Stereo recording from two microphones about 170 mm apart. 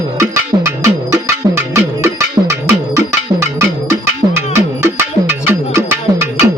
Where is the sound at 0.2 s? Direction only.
20° right (ahead or behind).